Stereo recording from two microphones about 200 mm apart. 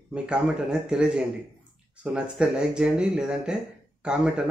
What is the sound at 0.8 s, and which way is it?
Speech, 5° right (ahead or behind).